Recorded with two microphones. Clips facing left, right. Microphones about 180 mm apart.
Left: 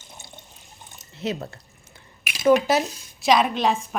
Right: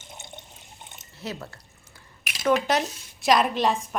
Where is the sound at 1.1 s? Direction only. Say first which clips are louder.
Left 7 dB; 20° left (ahead or behind).